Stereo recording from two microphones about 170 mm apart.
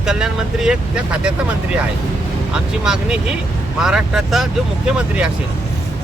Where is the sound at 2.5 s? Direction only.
5° right (ahead or behind).